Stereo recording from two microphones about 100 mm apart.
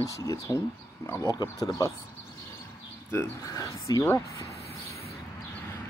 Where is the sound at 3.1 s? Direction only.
30° left (ahead or behind).